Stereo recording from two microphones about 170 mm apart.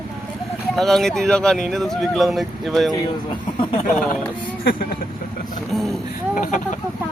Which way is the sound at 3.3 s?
30° left (ahead or behind).